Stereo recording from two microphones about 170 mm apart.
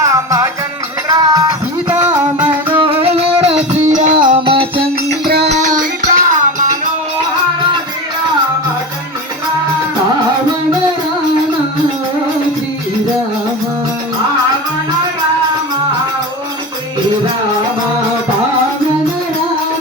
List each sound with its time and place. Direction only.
0.0 s music: 20° right (ahead or behind)
2.8 s music: 35° right (ahead or behind); by 4.3 s 50° right (ahead or behind)
4.3 s music: 30° right (ahead or behind)
5.2 s music: 70° right (ahead or behind)
5.5 s music: 45° right (ahead or behind)